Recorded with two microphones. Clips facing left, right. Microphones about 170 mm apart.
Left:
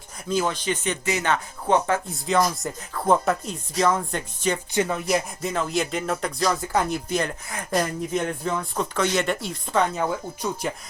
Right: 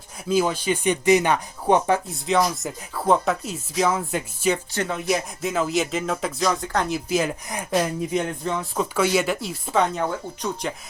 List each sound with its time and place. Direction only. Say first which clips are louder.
0.3 s speech: right 3 dB; 10° right (ahead or behind)
2.0 s speech: right 1 dB; centre (ahead or behind)
4.5 s speech: left 2 dB; 10° left (ahead or behind)